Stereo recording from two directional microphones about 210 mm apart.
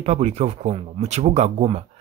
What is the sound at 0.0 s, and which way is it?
Speech, 30° right (ahead or behind).